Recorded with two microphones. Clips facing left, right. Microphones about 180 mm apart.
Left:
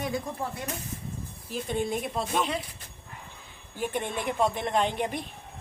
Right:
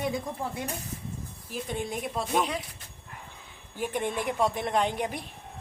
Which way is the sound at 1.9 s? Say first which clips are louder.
Left 1 dB; 10° right (ahead or behind).